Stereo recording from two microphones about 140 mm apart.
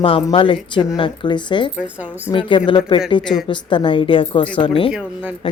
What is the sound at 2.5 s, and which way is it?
Speech, 35° left (ahead or behind).